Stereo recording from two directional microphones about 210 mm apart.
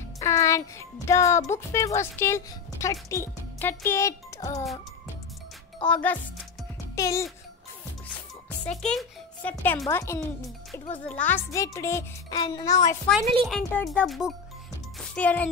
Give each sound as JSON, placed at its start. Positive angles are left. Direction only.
{"t": 0.2, "sound": "music", "side_deg": 15}
{"t": 1.0, "sound": "speech", "side_deg": 15}
{"t": 5.9, "sound": "speech", "side_deg": 5}
{"t": 8.8, "sound": "a child's voice", "side_deg": 5}
{"t": 13.2, "sound": "a child's voice", "side_deg": -25}
{"t": 13.5, "sound": "speech", "side_deg": 5}
{"t": 15.0, "sound": "music", "side_deg": 5}